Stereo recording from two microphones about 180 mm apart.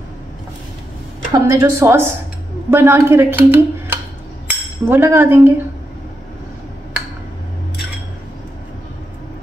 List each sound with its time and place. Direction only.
1.3 s speech: 15° right (ahead or behind)
4.5 s cutlery: 10° right (ahead or behind)